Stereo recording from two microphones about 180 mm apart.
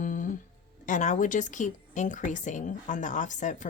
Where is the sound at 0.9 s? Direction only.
45° left (ahead or behind).